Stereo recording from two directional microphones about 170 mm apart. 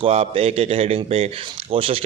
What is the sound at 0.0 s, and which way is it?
Speech, 35° right (ahead or behind).